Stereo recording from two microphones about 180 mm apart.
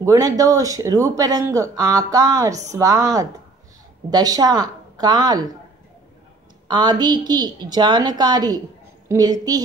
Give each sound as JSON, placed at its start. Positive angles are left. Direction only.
{"t": 0.0, "sound": "speech", "side_deg": -20}
{"t": 6.7, "sound": "speech", "side_deg": -25}